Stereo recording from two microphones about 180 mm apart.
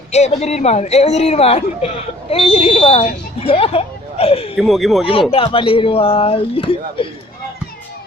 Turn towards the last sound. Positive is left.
turn(degrees=30)  # may be behind; listen again after turning